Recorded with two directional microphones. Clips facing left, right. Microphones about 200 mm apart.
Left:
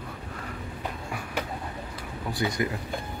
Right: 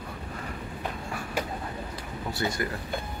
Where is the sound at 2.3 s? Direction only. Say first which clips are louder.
Left 2 dB; 15° left (ahead or behind).